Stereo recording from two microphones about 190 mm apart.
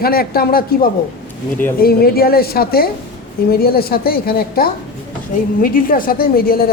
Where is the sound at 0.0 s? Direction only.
55° left (ahead or behind).